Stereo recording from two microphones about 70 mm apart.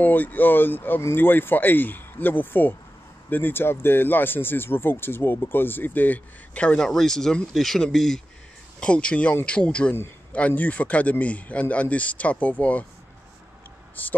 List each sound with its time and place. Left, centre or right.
0.0 s speech: left
14.0 s speech: left